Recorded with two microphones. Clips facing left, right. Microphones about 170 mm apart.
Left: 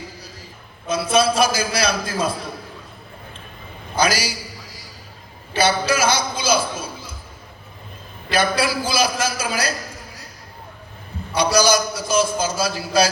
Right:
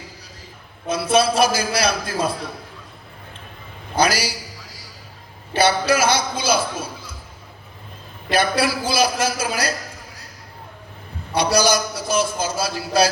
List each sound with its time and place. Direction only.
0.9 s a man's voice: 60° right (ahead or behind)
3.9 s a man's voice: 60° right (ahead or behind)
5.5 s a man's voice: 60° right (ahead or behind)
8.3 s a man's voice: 60° right (ahead or behind)
11.3 s a man's voice: 60° right (ahead or behind)